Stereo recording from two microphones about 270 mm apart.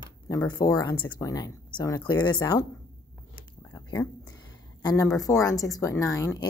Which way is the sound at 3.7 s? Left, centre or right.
Centre.